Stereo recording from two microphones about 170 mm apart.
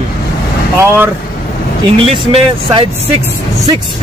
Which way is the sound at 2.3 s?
30° right (ahead or behind).